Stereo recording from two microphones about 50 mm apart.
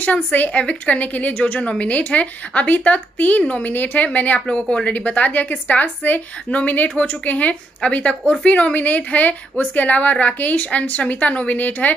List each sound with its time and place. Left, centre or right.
0.0 s a woman's voice: left
4.5 s a woman's voice: centre